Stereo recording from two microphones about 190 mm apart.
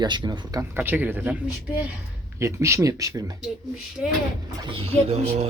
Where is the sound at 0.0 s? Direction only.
25° right (ahead or behind).